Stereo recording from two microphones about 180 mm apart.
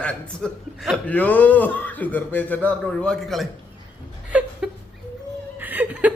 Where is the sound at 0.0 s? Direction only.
5° left (ahead or behind).